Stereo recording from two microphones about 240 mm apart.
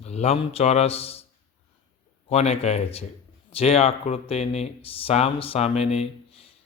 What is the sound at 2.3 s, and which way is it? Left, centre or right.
Speech, left.